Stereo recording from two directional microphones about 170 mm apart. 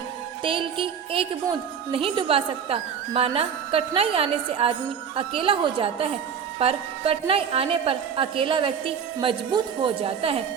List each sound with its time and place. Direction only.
0.4 s a woman's voice: 30° right (ahead or behind)